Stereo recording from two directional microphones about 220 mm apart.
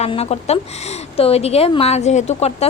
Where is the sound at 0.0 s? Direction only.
25° left (ahead or behind).